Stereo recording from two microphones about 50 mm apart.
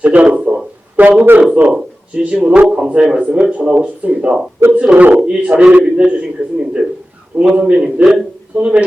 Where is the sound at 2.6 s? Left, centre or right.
Centre.